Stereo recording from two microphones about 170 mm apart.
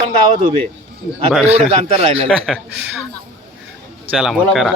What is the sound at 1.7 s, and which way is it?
Speech, 35° right (ahead or behind).